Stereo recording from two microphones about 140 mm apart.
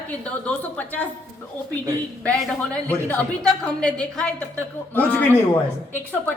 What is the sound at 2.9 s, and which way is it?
A woman's voice, 10° left (ahead or behind).